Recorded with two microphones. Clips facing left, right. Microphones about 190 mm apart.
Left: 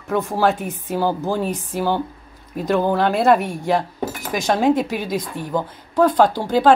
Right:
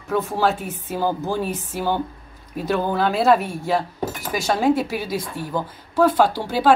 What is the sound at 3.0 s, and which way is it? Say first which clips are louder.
Speech: even; centre (ahead or behind).